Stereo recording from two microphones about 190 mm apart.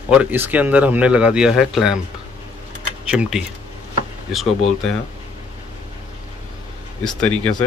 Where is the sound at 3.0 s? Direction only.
5° right (ahead or behind).